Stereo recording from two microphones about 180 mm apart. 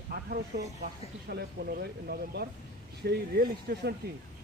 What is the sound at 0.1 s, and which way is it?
Speech, 55° right (ahead or behind).